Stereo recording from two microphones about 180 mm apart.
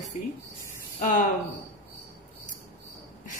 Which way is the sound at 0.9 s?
45° left (ahead or behind).